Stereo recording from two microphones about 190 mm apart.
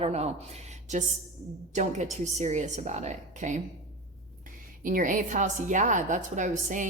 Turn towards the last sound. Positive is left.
turn(degrees=-40)  # may be behind; listen again after turning